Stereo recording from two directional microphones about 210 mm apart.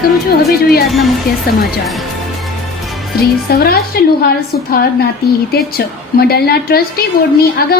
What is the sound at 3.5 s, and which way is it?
A woman's voice, 50° left (ahead or behind).